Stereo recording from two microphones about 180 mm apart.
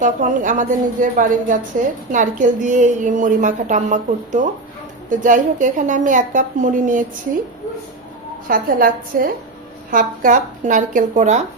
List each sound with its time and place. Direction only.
0.0 s a woman's voice: 45° right (ahead or behind)
8.4 s a woman's voice: 50° right (ahead or behind)